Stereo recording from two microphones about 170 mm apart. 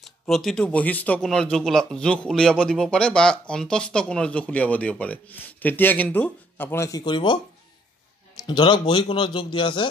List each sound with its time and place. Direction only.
0.0 s speech: centre (ahead or behind); by 7.3 s 25° left (ahead or behind)
8.5 s a man's voice: 25° left (ahead or behind)